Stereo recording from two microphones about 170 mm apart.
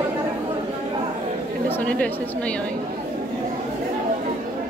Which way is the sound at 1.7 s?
10° left (ahead or behind).